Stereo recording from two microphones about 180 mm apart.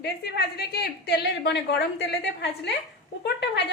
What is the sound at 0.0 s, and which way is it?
A woman's voice, 60° left (ahead or behind).